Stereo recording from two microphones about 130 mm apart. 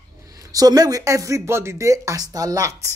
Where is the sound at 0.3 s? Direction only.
25° right (ahead or behind).